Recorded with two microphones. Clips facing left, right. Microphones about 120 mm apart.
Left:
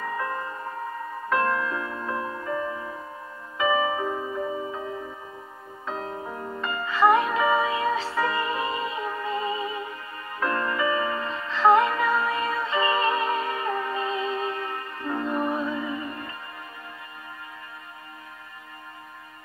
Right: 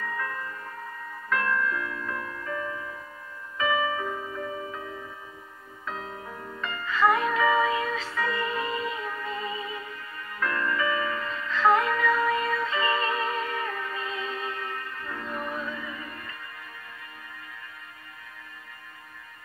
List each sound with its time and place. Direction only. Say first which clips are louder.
0.0 s music: left 4 dB; 30° left (ahead or behind)
6.0 s music: left 5 dB; 30° left (ahead or behind)